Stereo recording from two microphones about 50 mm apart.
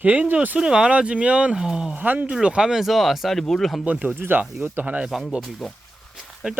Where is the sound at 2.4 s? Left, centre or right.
Centre.